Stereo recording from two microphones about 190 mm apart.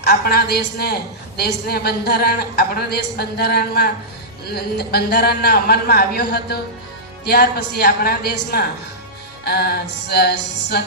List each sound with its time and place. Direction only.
0.0 s a woman's voice: 55° left (ahead or behind)